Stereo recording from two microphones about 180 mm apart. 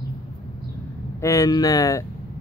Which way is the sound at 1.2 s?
20° left (ahead or behind).